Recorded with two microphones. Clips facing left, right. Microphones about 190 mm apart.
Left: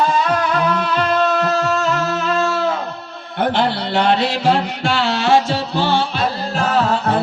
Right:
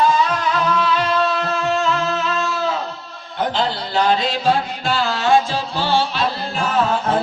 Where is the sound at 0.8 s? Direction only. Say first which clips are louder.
Left 1 dB; 55° left (ahead or behind).